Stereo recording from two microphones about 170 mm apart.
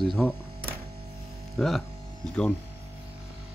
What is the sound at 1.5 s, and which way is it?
Speech, centre (ahead or behind).